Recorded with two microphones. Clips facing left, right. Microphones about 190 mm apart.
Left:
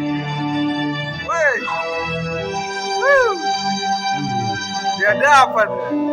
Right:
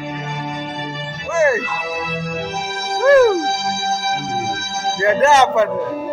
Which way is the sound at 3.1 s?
25° right (ahead or behind).